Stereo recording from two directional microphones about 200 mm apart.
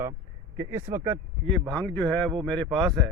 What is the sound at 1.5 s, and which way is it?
Speech, centre (ahead or behind).